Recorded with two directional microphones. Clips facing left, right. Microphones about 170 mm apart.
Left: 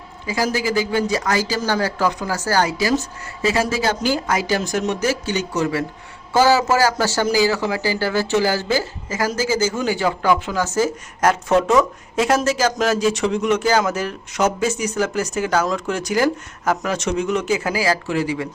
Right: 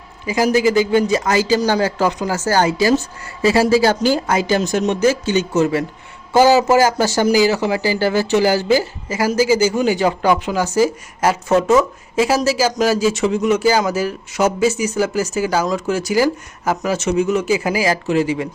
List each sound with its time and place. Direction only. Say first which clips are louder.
0.3 s speech: right 6 dB; 15° right (ahead or behind)